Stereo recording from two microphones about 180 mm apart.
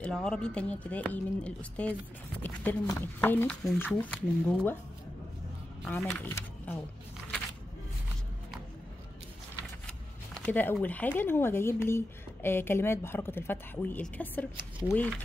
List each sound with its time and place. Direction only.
0.0 s speech: 5° left (ahead or behind)
5.9 s speech: 10° left (ahead or behind)
9.8 s speech: 5° left (ahead or behind)